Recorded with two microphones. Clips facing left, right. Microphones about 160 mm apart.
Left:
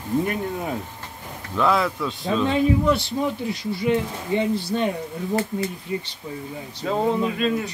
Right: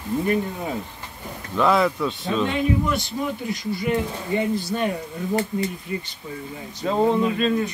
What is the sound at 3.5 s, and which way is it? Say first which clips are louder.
Speech: even; 30° left (ahead or behind).